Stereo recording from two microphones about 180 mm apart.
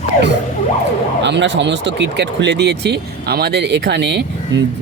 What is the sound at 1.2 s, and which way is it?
Speech, 80° right.